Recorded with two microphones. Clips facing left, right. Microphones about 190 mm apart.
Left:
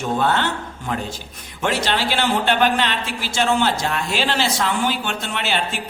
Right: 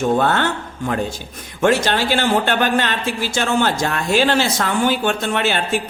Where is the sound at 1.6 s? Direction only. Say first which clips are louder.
Right 5 dB; 50° right (ahead or behind).